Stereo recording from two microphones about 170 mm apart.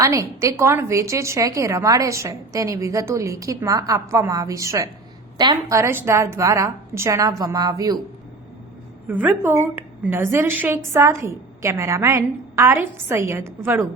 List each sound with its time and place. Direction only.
0.0 s a woman's voice: 20° right (ahead or behind)
9.0 s a woman's voice: 10° right (ahead or behind)